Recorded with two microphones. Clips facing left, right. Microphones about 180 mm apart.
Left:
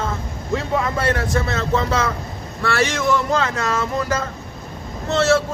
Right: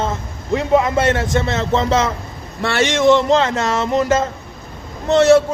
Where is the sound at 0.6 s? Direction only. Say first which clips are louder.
Right 7 dB; 20° right (ahead or behind).